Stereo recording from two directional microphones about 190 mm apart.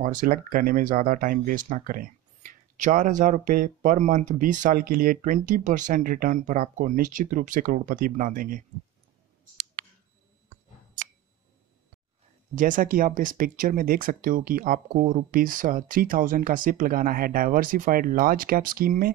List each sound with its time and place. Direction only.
0.0 s speech: 45° right (ahead or behind)
12.5 s speech: 45° right (ahead or behind)